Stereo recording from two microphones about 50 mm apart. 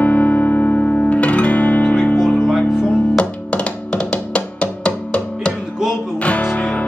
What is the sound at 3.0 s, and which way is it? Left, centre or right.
Music, left.